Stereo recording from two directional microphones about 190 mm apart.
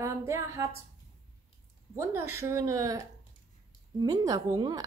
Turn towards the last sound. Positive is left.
turn(degrees=-20)  # may be behind; listen again after turning